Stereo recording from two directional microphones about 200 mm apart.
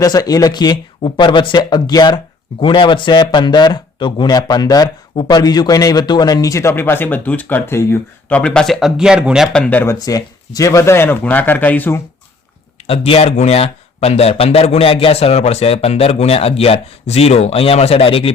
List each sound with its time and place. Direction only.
0.0 s speech: 20° left (ahead or behind)
12.9 s speech: 30° left (ahead or behind)